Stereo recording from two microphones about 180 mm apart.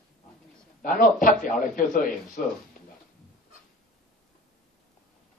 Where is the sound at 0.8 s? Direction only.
50° left (ahead or behind).